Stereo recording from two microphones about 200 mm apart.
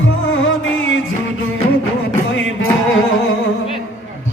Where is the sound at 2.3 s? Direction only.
75° left (ahead or behind).